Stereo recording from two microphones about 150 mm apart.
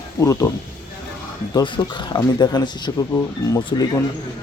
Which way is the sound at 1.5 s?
30° left (ahead or behind).